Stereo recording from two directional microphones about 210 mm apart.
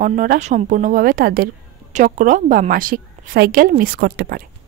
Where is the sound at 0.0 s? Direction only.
40° right (ahead or behind).